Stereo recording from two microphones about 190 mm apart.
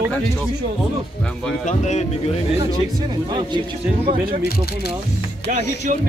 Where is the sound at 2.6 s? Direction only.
20° right (ahead or behind).